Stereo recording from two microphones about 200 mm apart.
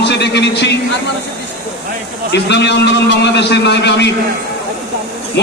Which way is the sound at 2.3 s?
60° left (ahead or behind).